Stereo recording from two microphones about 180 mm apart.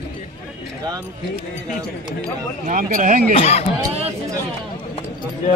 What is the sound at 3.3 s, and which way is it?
Speech, 35° left (ahead or behind).